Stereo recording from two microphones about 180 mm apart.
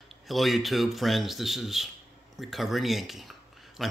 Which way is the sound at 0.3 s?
Centre (ahead or behind).